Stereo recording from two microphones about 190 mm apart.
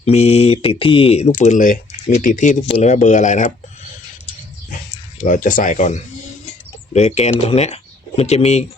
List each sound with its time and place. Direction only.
0.0 s speech: 35° left (ahead or behind)
5.2 s speech: 40° left (ahead or behind)